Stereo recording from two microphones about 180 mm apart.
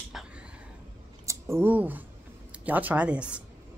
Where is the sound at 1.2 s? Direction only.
15° right (ahead or behind).